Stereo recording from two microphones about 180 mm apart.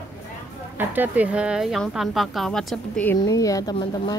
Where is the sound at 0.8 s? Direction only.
10° right (ahead or behind).